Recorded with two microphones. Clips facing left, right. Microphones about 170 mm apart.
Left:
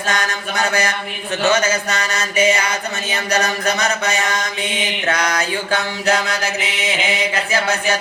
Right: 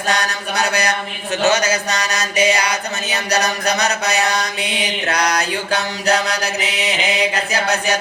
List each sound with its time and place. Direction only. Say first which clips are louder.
0.1 s mantra: right 2 dB; 35° right (ahead or behind)